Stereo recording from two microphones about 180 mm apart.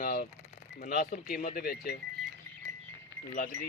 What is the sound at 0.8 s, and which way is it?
Speech, 55° left (ahead or behind).